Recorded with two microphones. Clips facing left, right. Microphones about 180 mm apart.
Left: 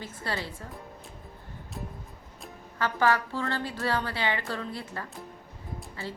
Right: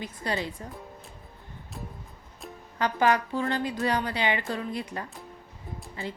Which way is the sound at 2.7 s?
20° right (ahead or behind).